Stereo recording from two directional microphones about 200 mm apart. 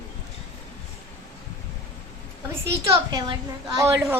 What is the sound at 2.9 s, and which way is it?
A woman's voice, 20° right (ahead or behind).